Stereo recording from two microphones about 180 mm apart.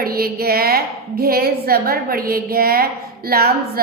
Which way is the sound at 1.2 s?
55° right (ahead or behind).